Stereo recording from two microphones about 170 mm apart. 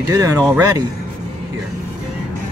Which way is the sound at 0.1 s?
20° right (ahead or behind).